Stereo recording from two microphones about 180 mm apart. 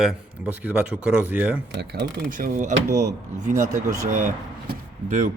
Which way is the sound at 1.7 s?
60° right (ahead or behind).